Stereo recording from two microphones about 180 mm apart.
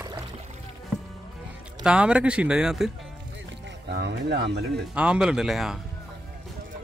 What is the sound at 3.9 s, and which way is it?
Music, 70° right (ahead or behind).